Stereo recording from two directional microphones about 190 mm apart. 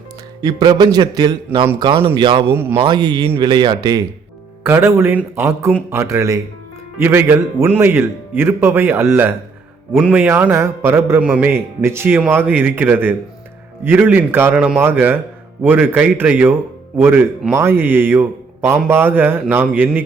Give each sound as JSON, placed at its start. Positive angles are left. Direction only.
{"t": 0.4, "sound": "a man's voice", "side_deg": -20}